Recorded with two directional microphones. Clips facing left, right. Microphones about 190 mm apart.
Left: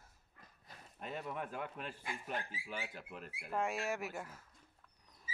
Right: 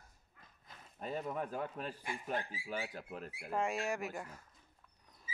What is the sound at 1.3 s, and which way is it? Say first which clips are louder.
A man's voice: right 3 dB; 40° right (ahead or behind).